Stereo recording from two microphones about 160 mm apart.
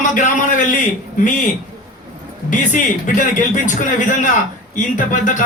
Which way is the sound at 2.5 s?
50° left (ahead or behind).